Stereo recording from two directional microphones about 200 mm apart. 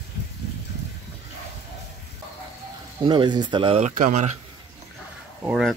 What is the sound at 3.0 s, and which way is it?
Speech, 25° right (ahead or behind).